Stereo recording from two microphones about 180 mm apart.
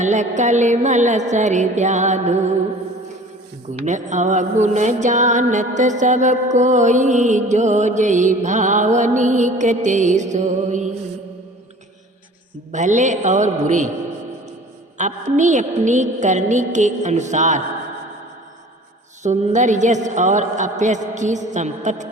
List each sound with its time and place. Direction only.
0.0 s music: 40° right (ahead or behind)
3.8 s music: 40° right (ahead or behind)
12.7 s a man's voice: 45° right (ahead or behind)
14.9 s music: 45° right (ahead or behind)
19.2 s music: 40° right (ahead or behind)